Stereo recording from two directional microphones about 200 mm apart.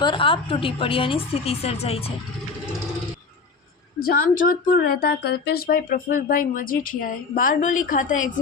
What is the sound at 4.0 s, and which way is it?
Speech, 45° left (ahead or behind).